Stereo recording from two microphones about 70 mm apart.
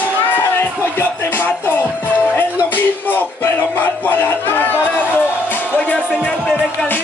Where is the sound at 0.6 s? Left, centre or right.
Left.